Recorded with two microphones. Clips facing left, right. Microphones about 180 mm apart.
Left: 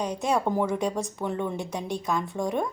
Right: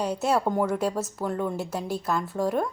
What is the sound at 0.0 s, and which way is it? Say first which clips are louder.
A woman's voice: right 1 dB; 5° right (ahead or behind).